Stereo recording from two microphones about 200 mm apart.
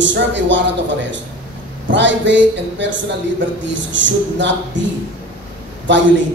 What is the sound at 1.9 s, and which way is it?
A man's voice, 65° right (ahead or behind).